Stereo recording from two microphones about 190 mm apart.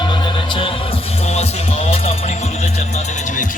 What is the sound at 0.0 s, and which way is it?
Music, 25° left (ahead or behind).